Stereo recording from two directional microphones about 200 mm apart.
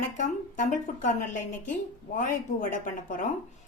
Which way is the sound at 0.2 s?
40° left (ahead or behind).